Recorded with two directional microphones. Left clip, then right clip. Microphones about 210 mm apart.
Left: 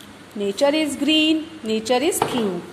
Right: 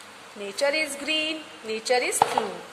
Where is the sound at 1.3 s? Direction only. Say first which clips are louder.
Left 9 dB; 10° right (ahead or behind).